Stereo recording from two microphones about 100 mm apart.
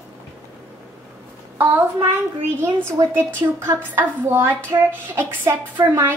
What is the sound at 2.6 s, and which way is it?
A woman's voice, 25° right (ahead or behind).